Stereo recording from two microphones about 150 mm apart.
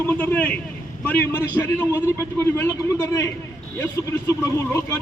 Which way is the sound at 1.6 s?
15° left (ahead or behind).